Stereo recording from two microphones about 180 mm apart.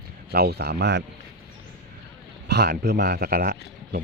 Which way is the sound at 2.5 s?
65° right (ahead or behind).